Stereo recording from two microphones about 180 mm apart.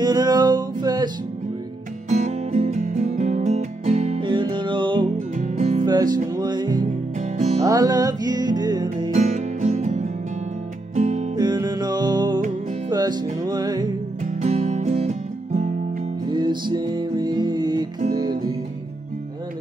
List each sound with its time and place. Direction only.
0.0 s music: 25° right (ahead or behind)
2.0 s music: 40° right (ahead or behind)
4.2 s music: 25° right (ahead or behind)
5.4 s music: 45° right (ahead or behind)
6.3 s music: 25° right (ahead or behind)
7.2 s music: 40° right (ahead or behind)
7.6 s music: 20° right (ahead or behind)
9.1 s music: 40° right (ahead or behind)
11.3 s music: 20° right (ahead or behind)
14.4 s music: 35° right (ahead or behind)
16.3 s music: 25° right (ahead or behind)
18.1 s guitar: 20° right (ahead or behind)